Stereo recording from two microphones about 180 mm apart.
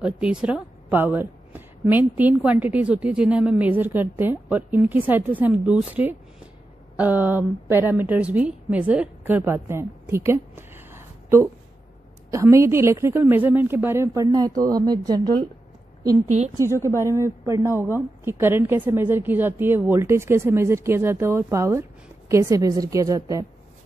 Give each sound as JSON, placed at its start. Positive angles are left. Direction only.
{"t": 0.0, "sound": "a woman's voice", "side_deg": -5}
{"t": 16.3, "sound": "a woman's voice", "side_deg": -40}
{"t": 17.0, "sound": "a woman's voice", "side_deg": -15}